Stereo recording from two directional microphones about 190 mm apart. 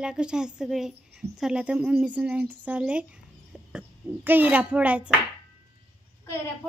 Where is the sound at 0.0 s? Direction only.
5° right (ahead or behind).